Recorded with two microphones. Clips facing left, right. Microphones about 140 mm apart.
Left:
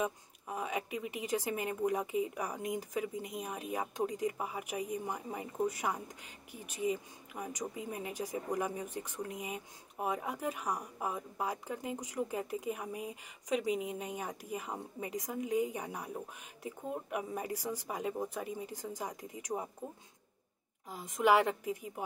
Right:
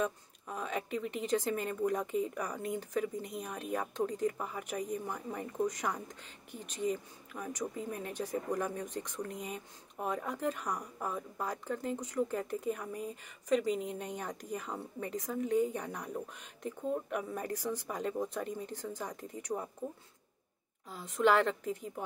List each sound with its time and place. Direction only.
0.0 s speech: 10° left (ahead or behind)
20.9 s speech: 15° left (ahead or behind)